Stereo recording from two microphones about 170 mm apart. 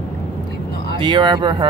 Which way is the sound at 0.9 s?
30° right (ahead or behind).